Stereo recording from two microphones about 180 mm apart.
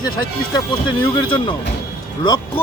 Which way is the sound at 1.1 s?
30° left (ahead or behind).